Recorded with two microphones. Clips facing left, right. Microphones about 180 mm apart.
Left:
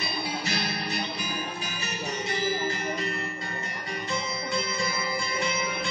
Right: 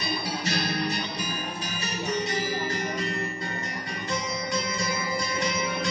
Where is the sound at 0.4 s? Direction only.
35° right (ahead or behind).